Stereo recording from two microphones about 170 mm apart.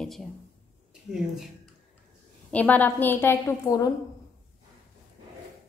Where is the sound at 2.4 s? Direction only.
10° left (ahead or behind).